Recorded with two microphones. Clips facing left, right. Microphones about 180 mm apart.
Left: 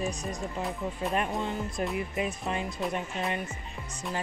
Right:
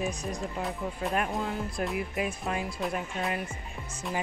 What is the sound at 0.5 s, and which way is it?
Speech, centre (ahead or behind).